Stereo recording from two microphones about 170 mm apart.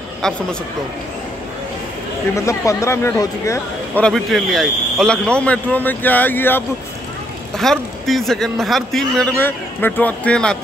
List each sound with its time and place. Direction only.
2.3 s speech: 20° left (ahead or behind)
4.0 s a man's voice: centre (ahead or behind)